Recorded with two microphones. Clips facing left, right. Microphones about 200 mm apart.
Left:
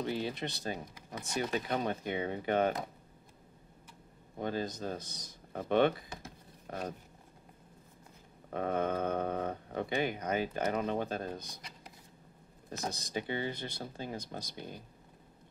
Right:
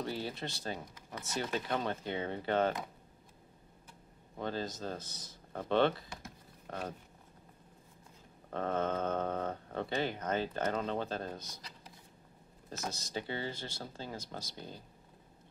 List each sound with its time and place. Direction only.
0.0 s speech: 20° left (ahead or behind)
4.4 s speech: 15° left (ahead or behind)
8.5 s speech: 15° left (ahead or behind)
12.9 s speech: 15° left (ahead or behind)